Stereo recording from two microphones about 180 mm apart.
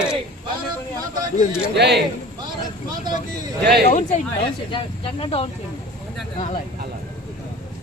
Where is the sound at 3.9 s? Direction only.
40° left (ahead or behind).